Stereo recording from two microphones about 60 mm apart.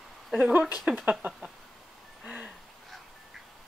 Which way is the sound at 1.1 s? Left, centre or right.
Centre.